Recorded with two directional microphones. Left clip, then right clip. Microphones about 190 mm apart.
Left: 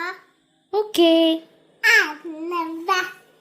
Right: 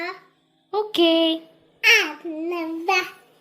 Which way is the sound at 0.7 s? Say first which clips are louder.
Left 2 dB; 25° left (ahead or behind).